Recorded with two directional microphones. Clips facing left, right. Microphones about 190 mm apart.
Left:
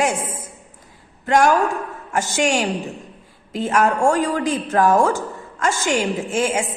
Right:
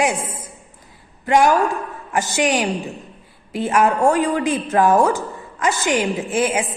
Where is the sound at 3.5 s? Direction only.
10° right (ahead or behind).